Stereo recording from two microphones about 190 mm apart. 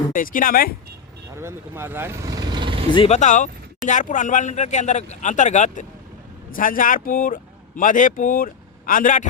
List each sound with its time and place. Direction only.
0.1 s speech: 45° left (ahead or behind)
1.4 s speech: 15° right (ahead or behind)
2.9 s a man's voice: 30° left (ahead or behind)